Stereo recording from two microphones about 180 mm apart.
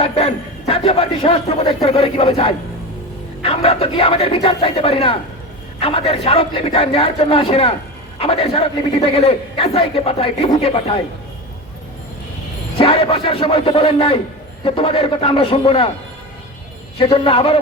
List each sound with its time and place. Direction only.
0.0 s a man's voice: 30° left (ahead or behind)
12.7 s a man's voice: 30° left (ahead or behind)
17.0 s a man's voice: 30° left (ahead or behind)